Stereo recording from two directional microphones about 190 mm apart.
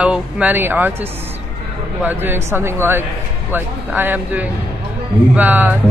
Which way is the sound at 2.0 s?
10° right (ahead or behind).